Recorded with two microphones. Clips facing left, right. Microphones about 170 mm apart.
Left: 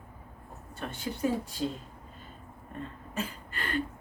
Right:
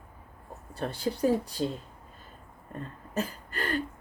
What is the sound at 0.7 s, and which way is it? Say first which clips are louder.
Speech: right 5 dB; 35° right (ahead or behind).